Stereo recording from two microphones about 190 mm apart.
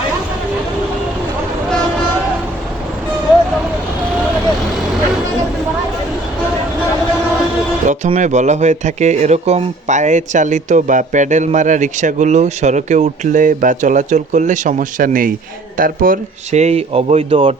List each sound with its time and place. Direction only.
7.9 s speech: 40° right (ahead or behind)